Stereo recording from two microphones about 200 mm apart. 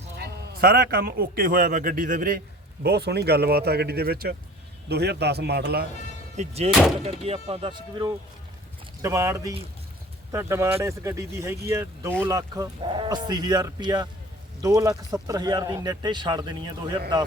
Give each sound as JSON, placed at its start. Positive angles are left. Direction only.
{"t": 0.2, "sound": "a man's voice", "side_deg": -50}
{"t": 2.8, "sound": "a man's voice", "side_deg": -55}
{"t": 6.3, "sound": "speech", "side_deg": -35}
{"t": 6.7, "sound": "speech", "side_deg": 0}
{"t": 7.0, "sound": "speech", "side_deg": -30}